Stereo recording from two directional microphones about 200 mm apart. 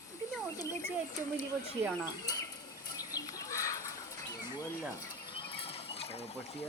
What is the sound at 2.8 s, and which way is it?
Bird, 20° left (ahead or behind).